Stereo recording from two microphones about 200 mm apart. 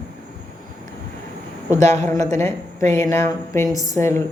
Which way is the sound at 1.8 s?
35° right (ahead or behind).